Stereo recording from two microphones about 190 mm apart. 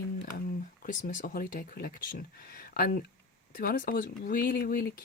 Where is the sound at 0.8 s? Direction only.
45° left (ahead or behind).